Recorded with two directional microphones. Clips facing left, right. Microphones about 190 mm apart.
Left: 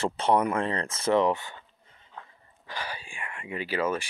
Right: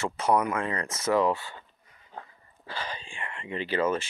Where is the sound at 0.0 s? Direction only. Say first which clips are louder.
Left 1 dB; 30° left (ahead or behind).